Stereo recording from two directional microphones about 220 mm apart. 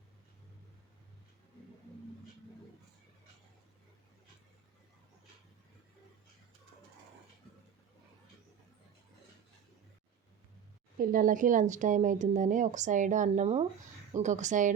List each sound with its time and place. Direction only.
10.9 s speech: 40° right (ahead or behind)